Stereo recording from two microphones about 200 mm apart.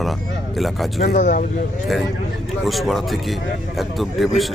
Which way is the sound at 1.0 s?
40° left (ahead or behind).